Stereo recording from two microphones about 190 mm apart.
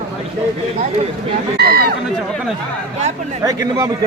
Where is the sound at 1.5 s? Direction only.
50° right (ahead or behind).